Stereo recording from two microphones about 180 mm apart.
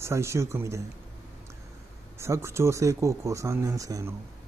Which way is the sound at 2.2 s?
15° right (ahead or behind).